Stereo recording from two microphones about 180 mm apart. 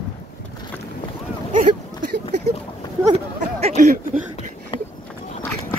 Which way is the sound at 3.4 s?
40° right (ahead or behind).